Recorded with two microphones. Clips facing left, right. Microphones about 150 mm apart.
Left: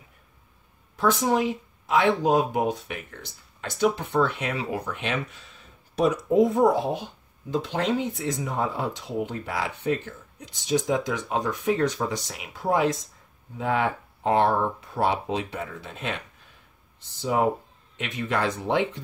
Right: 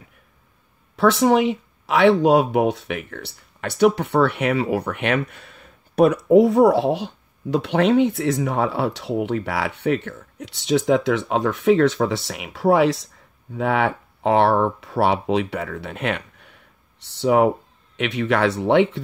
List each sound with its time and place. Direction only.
0.9 s speech: 80° right
12.3 s speech: 75° right (ahead or behind)